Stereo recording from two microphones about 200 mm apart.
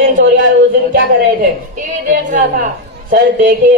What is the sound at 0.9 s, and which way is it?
A man's voice, 50° right (ahead or behind).